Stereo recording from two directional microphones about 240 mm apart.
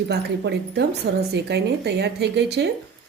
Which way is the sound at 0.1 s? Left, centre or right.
Right.